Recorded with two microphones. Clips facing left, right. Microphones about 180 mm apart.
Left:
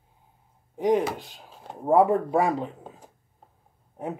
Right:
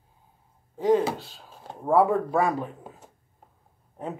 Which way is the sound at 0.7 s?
15° left (ahead or behind).